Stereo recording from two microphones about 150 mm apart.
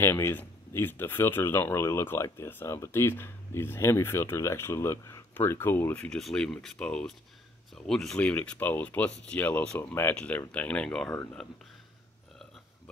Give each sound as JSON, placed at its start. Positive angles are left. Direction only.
{"t": 0.0, "sound": "speech", "side_deg": 15}